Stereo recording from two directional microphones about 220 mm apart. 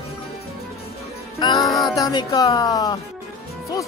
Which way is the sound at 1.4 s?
20° left (ahead or behind).